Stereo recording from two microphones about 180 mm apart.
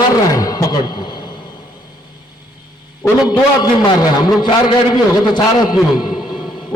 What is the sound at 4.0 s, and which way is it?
A man's voice, 20° left (ahead or behind).